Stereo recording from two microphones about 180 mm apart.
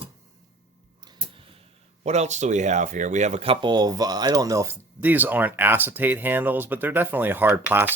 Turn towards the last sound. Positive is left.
turn(degrees=-10)  # may be behind; listen again after turning